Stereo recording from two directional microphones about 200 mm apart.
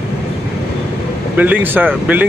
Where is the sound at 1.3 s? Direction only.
10° right (ahead or behind).